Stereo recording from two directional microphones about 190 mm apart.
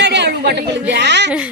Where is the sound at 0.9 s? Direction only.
65° right (ahead or behind).